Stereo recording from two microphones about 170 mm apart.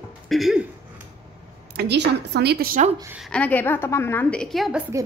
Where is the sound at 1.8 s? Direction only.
80° right.